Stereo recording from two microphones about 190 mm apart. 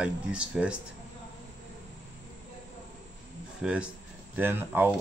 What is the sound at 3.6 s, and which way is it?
Speech, 5° right (ahead or behind).